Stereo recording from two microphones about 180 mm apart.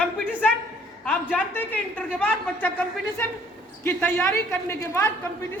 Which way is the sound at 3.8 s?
5° left (ahead or behind).